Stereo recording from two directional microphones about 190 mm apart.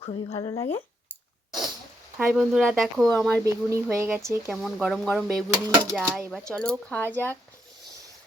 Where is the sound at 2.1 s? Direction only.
Centre (ahead or behind).